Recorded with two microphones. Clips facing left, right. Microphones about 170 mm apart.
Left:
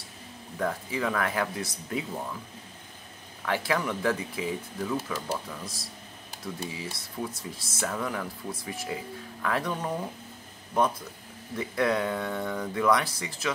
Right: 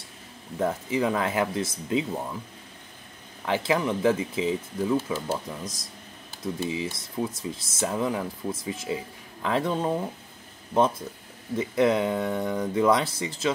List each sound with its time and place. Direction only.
0.6 s speech: 20° right (ahead or behind)
3.4 s speech: 20° right (ahead or behind)